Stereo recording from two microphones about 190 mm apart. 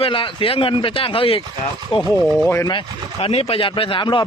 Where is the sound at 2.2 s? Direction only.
Centre (ahead or behind).